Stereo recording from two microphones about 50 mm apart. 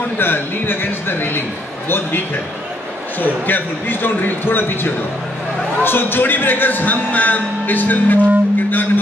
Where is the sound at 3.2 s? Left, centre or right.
Left.